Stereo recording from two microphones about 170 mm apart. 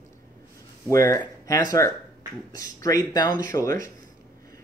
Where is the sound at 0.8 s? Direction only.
20° left (ahead or behind).